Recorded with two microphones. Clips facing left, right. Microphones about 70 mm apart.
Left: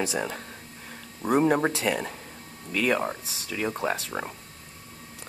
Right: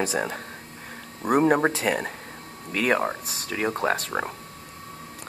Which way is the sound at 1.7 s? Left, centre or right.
Right.